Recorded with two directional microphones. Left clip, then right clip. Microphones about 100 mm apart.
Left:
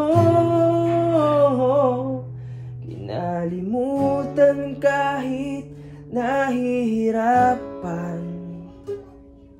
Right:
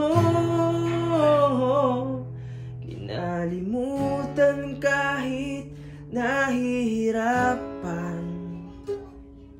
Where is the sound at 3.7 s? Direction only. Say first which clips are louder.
Left 7 dB; 25° left (ahead or behind).